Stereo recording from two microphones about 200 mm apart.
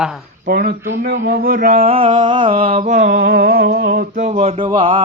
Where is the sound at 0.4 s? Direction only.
50° right (ahead or behind).